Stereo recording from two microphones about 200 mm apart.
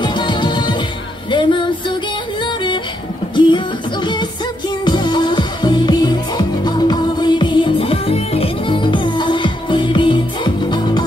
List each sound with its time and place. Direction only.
0.0 s music: 25° left (ahead or behind)